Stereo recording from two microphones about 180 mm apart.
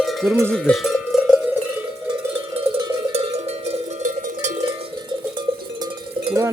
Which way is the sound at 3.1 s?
35° right (ahead or behind).